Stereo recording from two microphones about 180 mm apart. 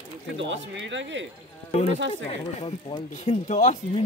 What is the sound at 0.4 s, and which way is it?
Speech, 90° right.